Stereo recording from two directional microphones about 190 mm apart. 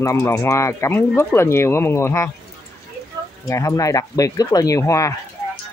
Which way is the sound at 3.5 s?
15° left (ahead or behind).